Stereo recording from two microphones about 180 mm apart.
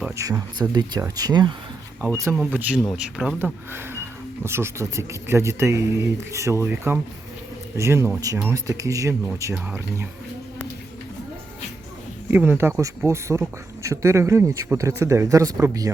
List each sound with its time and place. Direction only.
0.2 s speech: 20° right (ahead or behind)
2.5 s speech: 10° right (ahead or behind)
12.3 s speech: 10° right (ahead or behind)